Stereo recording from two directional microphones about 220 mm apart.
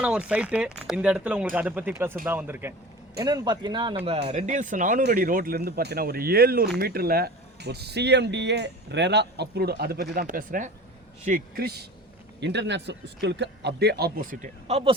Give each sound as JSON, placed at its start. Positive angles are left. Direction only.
{"t": 0.0, "sound": "a man's voice", "side_deg": -5}